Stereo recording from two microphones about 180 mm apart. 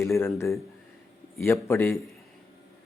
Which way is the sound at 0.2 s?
15° left (ahead or behind).